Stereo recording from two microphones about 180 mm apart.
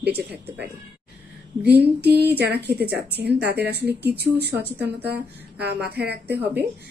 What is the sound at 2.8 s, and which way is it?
A woman's voice, 65° right (ahead or behind).